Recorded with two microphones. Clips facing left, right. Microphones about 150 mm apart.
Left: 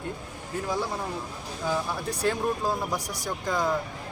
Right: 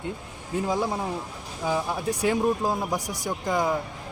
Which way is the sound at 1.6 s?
15° right (ahead or behind).